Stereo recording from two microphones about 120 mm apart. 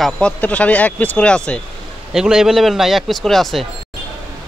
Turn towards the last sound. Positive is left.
turn(degrees=0)  # may be behind; listen again after turning